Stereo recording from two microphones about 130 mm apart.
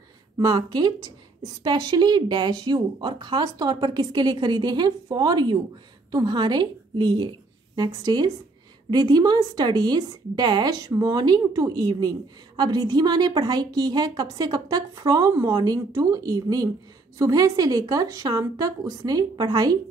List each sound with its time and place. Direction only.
0.4 s a woman's voice: 30° right (ahead or behind)